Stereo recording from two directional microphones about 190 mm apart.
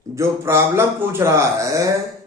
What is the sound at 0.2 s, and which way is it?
Speech, 15° right (ahead or behind).